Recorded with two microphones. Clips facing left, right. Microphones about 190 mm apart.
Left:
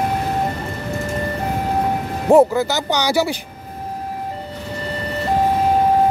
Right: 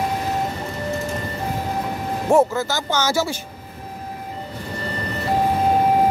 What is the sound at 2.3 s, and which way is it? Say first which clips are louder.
Speech: left 5 dB; 20° left (ahead or behind).